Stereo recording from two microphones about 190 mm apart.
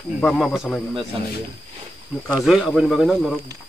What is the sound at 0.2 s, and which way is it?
Speech, 5° left (ahead or behind).